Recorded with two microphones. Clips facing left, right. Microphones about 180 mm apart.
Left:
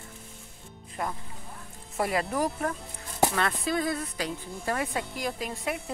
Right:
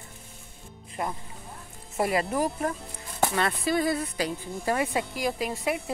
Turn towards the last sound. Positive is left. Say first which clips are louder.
# right 4 dB
turn(degrees=-5)  # may be behind; listen again after turning